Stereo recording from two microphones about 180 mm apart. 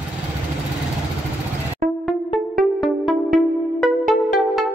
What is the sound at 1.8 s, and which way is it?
Music, 50° right (ahead or behind).